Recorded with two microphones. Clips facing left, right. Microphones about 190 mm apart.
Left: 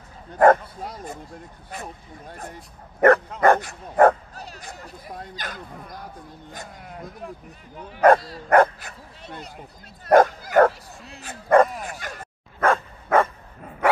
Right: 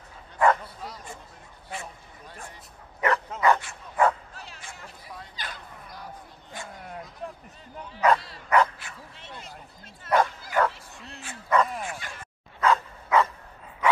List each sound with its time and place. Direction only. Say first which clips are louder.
0.4 s bow-wow: left 7 dB; 50° left (ahead or behind)
1.7 s speech: left 2 dB; 40° left (ahead or behind)
3.9 s bow-wow: left 7 dB; 55° left (ahead or behind)
6.5 s a sound: right 2 dB; 40° left (ahead or behind)
8.0 s dog: left 7 dB; 45° left (ahead or behind)
10.0 s bow-wow: left 8 dB; 45° left (ahead or behind)
11.1 s speech: left 7 dB; 45° left (ahead or behind)
11.8 s dog: left 2 dB; 40° left (ahead or behind)